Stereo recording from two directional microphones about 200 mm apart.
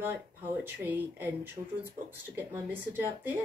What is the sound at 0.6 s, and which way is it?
Speech, 10° right (ahead or behind).